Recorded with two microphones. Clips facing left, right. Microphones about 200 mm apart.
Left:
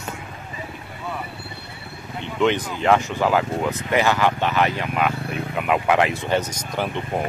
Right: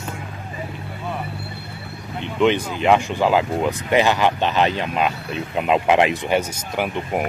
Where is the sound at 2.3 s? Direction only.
15° right (ahead or behind).